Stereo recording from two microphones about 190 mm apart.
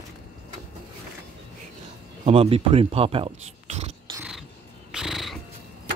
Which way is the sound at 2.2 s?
30° right (ahead or behind).